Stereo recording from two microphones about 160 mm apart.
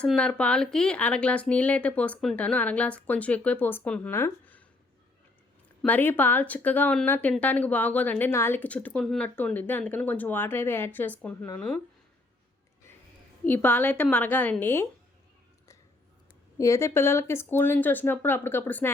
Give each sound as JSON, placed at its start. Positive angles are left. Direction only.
{"t": 0.0, "sound": "speech", "side_deg": 5}
{"t": 5.8, "sound": "speech", "side_deg": 10}
{"t": 13.4, "sound": "speech", "side_deg": 10}
{"t": 16.6, "sound": "speech", "side_deg": 20}